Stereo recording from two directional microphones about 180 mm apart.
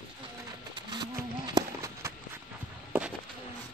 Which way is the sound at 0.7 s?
25° right (ahead or behind).